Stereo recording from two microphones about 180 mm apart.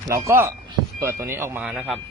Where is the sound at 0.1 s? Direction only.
15° right (ahead or behind).